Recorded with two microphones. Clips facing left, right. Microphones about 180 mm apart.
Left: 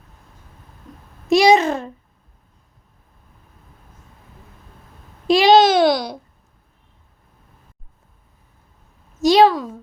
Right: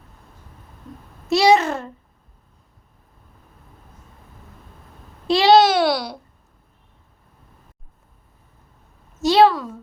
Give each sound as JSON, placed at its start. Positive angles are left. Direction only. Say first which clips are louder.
{"t": 1.3, "sound": "babbling", "louder": "left 2 dB", "side_deg": 15}
{"t": 5.3, "sound": "babbling", "louder": "left 1 dB", "side_deg": 15}
{"t": 9.2, "sound": "a sound", "louder": "left 2 dB", "side_deg": 15}